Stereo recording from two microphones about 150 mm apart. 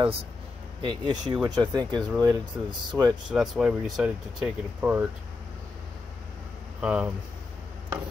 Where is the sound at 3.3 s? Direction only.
Centre (ahead or behind).